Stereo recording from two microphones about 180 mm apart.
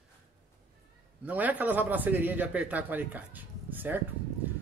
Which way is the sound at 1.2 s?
10° right (ahead or behind).